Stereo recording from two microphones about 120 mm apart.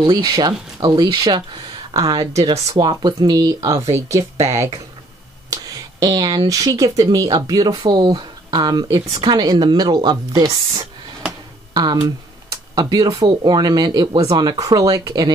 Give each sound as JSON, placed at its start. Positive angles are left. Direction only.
{"t": 0.0, "sound": "speech", "side_deg": -35}
{"t": 8.8, "sound": "speech", "side_deg": -25}
{"t": 9.1, "sound": "speech", "side_deg": -35}